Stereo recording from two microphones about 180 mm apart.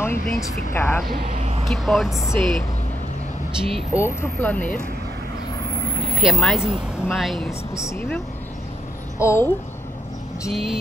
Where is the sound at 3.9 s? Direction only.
10° left (ahead or behind).